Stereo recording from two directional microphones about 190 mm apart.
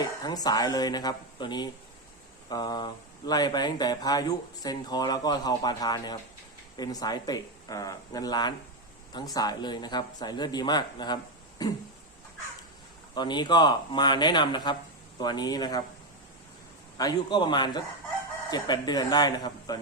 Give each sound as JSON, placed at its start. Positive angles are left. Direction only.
{"t": 0.0, "sound": "speech", "side_deg": 20}
{"t": 13.1, "sound": "speech", "side_deg": 25}
{"t": 17.0, "sound": "speech", "side_deg": 20}